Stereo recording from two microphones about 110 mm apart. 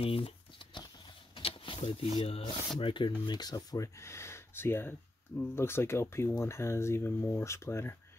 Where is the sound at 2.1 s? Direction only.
55° left (ahead or behind).